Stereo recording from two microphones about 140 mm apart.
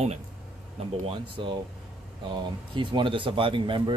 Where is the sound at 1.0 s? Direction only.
40° right (ahead or behind).